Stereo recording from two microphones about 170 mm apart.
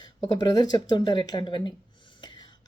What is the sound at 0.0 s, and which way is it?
Speech, 25° left (ahead or behind).